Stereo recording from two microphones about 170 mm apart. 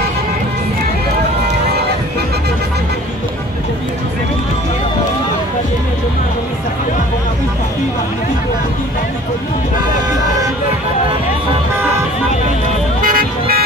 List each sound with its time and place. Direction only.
13.0 s vehicle: 60° right (ahead or behind)